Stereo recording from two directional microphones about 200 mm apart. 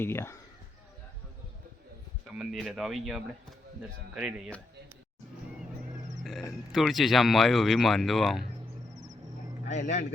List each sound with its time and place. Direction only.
0.0 s speech: 10° left (ahead or behind)
2.2 s speech: centre (ahead or behind)
6.7 s speech: centre (ahead or behind)
9.6 s a man's voice: 35° left (ahead or behind)